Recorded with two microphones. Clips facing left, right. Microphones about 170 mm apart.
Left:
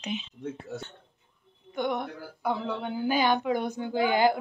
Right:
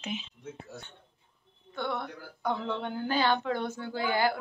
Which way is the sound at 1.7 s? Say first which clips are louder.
Left 4 dB; 15° left (ahead or behind).